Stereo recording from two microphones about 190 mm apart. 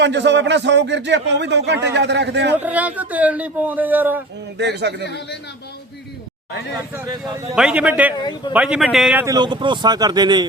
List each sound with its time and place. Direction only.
0.0 s speech: 65° right (ahead or behind)
2.6 s a man's voice: 10° right (ahead or behind)
4.5 s speech: 60° right (ahead or behind)
5.0 s a man's voice: 60° left (ahead or behind)
7.5 s a man's voice: 5° right (ahead or behind)
9.2 s speech: 20° right (ahead or behind)